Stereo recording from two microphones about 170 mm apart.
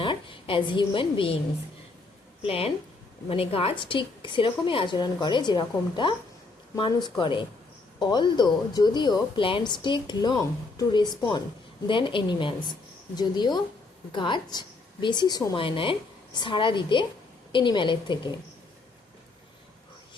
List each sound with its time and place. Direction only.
0.0 s a woman's voice: 30° left (ahead or behind)
2.4 s a woman's voice: 35° left (ahead or behind)